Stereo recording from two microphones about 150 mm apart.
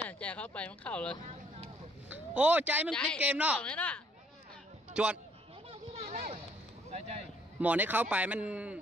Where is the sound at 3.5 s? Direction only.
10° left (ahead or behind).